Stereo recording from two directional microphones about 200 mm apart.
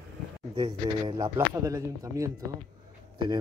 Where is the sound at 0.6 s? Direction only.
20° right (ahead or behind).